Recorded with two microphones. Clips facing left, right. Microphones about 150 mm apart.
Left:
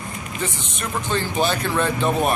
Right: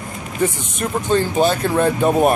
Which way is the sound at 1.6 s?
45° right (ahead or behind).